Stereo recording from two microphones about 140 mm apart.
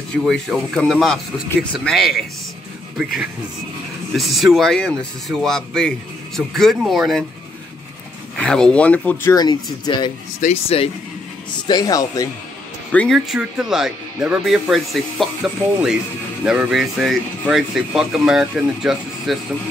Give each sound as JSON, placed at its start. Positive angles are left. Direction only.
{"t": 0.1, "sound": "speech", "side_deg": 0}
{"t": 4.1, "sound": "speech", "side_deg": 0}
{"t": 8.4, "sound": "speech", "side_deg": 5}
{"t": 9.3, "sound": "speech", "side_deg": 30}
{"t": 10.4, "sound": "speech", "side_deg": 50}
{"t": 11.6, "sound": "speech", "side_deg": 25}
{"t": 12.9, "sound": "speech", "side_deg": 10}
{"t": 13.3, "sound": "speech", "side_deg": -5}